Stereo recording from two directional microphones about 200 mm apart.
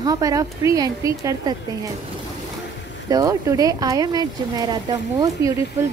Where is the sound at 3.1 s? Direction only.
15° right (ahead or behind).